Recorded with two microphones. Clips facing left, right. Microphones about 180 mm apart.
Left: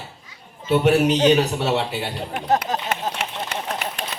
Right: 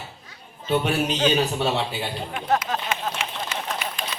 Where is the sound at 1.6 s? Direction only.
70° left (ahead or behind).